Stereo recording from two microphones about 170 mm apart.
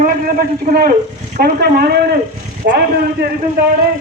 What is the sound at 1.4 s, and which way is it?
Speech, 65° right (ahead or behind).